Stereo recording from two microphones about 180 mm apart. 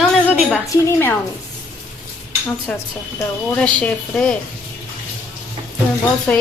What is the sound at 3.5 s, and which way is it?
Speech, 5° left (ahead or behind).